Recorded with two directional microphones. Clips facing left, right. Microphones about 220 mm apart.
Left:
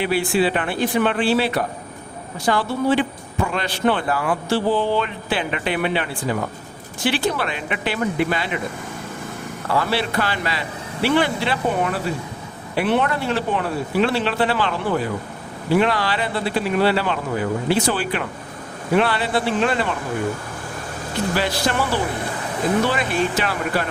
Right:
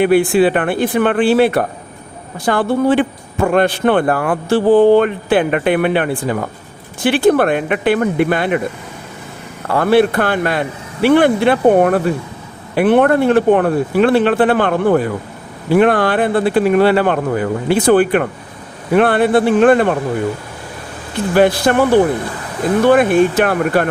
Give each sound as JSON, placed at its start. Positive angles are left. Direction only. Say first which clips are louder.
{"t": 0.0, "sound": "a man's voice", "louder": "right 8 dB", "side_deg": -55}
{"t": 9.6, "sound": "a man's voice", "louder": "right 10 dB", "side_deg": -50}
{"t": 21.3, "sound": "a man's voice", "louder": "right 12 dB", "side_deg": -55}